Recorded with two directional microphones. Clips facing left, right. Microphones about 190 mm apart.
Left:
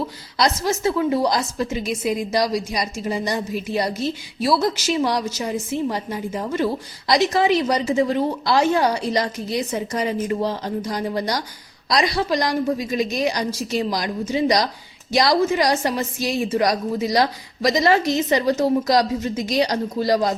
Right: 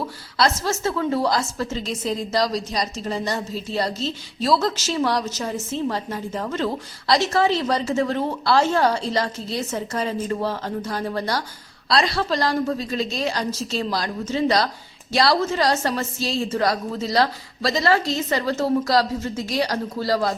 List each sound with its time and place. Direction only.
0.3 s a woman's voice: 15° left (ahead or behind)